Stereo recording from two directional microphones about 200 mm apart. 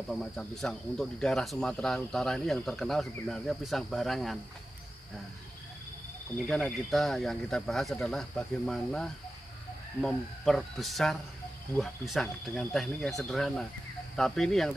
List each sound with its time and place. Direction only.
0.1 s speech: centre (ahead or behind)
6.3 s speech: centre (ahead or behind)